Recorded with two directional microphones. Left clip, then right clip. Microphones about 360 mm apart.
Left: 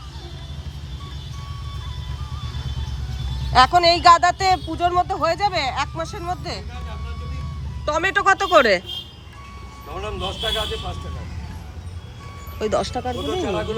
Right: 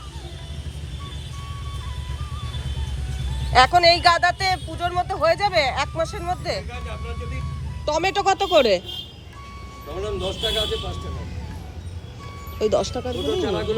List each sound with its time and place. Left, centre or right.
3.5 s speech: centre
7.9 s speech: centre
12.5 s speech: centre